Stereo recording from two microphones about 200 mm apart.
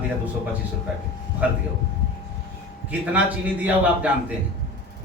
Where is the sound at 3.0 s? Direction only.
5° right (ahead or behind).